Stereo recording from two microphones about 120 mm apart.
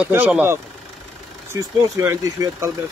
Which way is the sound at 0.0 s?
15° right (ahead or behind).